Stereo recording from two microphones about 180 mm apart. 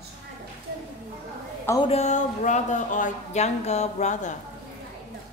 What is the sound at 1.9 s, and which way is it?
Speech, 40° left (ahead or behind).